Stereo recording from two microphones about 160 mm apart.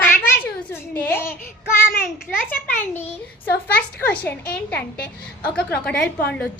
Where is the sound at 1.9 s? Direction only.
70° left (ahead or behind).